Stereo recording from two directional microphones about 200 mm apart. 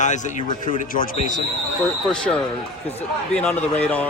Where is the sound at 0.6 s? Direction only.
25° left (ahead or behind).